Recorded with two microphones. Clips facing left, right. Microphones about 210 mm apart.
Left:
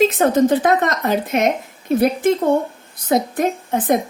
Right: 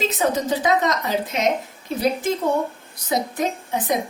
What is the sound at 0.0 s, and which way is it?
A woman's voice, 55° left (ahead or behind).